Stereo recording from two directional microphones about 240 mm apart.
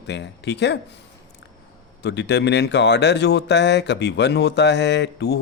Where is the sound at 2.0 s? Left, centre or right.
Left.